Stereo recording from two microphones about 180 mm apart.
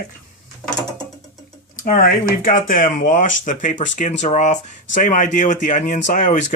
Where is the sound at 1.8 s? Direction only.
50° left (ahead or behind).